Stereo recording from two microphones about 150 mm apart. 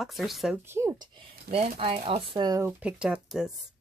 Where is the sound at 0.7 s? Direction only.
20° right (ahead or behind).